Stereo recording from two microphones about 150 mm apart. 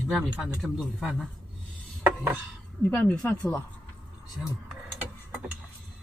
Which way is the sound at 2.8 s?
10° left (ahead or behind).